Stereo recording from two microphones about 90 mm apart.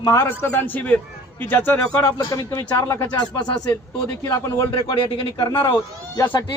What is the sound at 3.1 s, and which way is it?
Speech, 55° left (ahead or behind).